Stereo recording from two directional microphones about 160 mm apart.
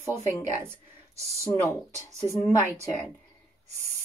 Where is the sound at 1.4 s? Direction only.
20° right (ahead or behind).